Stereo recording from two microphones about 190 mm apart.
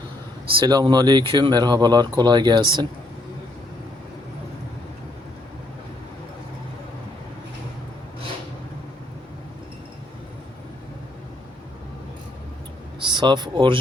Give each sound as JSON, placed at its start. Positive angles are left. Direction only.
{"t": 0.6, "sound": "speech", "side_deg": -20}
{"t": 13.0, "sound": "speech", "side_deg": -25}